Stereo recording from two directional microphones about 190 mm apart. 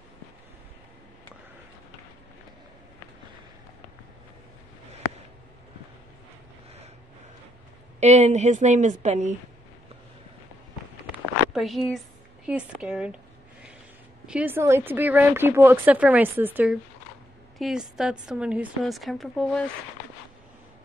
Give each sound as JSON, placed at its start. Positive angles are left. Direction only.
{"t": 8.0, "sound": "a woman's voice", "side_deg": -35}
{"t": 11.5, "sound": "a woman's voice", "side_deg": 0}
{"t": 14.2, "sound": "a woman's voice", "side_deg": -5}